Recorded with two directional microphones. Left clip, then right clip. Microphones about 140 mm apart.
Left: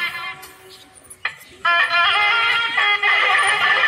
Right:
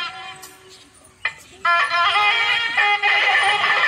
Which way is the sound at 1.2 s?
15° right (ahead or behind).